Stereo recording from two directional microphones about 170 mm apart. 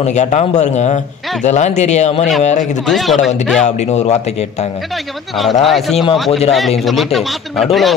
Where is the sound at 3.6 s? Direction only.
40° left (ahead or behind).